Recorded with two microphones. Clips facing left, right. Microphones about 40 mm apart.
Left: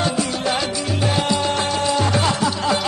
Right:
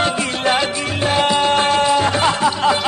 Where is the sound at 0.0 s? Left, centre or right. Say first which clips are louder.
Right 3 dB; right.